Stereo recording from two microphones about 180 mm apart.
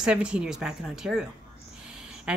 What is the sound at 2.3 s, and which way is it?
Speech, 5° right (ahead or behind).